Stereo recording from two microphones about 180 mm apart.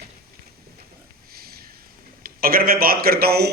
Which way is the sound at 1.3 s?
55° right (ahead or behind).